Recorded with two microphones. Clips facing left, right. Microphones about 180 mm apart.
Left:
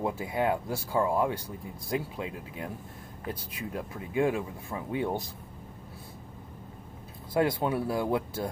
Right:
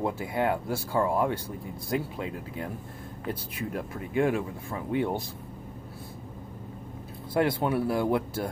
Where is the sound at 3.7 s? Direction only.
20° left (ahead or behind).